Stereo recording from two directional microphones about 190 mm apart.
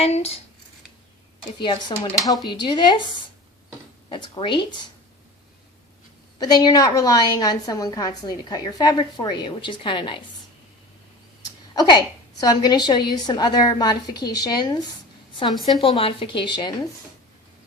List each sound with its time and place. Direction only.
0.0 s speech: 30° left (ahead or behind)
1.5 s a woman's voice: 25° left (ahead or behind)
4.1 s a woman's voice: 25° left (ahead or behind)
6.4 s a woman's voice: 20° left (ahead or behind)
11.7 s a woman's voice: 20° left (ahead or behind)
15.8 s a woman's voice: 30° left (ahead or behind)